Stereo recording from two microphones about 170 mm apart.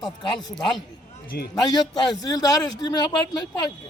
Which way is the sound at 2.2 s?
20° left (ahead or behind).